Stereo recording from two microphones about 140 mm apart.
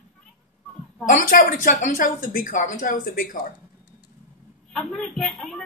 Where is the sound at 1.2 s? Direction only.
80° left.